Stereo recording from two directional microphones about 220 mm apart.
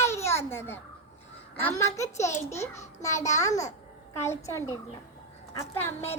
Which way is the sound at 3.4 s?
15° left (ahead or behind).